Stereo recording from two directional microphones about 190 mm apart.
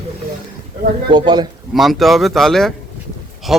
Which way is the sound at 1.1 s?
25° right (ahead or behind).